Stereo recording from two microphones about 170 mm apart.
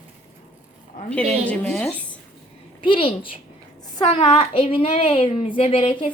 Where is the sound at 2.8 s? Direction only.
30° left (ahead or behind).